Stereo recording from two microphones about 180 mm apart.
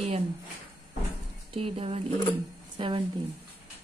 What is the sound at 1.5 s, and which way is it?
A woman's voice, 30° right (ahead or behind).